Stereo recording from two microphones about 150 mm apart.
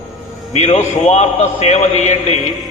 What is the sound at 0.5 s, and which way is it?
A man's voice, 50° left (ahead or behind).